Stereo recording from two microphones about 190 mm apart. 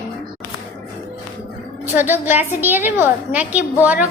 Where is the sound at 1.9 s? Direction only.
10° right (ahead or behind).